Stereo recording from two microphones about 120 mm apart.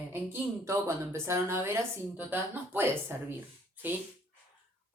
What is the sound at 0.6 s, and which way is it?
A woman's voice, 25° right (ahead or behind).